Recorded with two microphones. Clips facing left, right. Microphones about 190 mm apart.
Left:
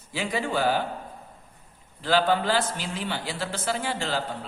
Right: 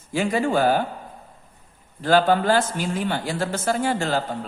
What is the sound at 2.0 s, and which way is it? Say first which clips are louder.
Speech: right 5 dB; 50° right (ahead or behind).